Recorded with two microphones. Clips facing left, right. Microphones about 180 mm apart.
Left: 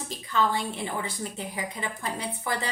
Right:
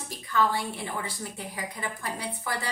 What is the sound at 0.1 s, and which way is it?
A woman's voice, 20° left (ahead or behind).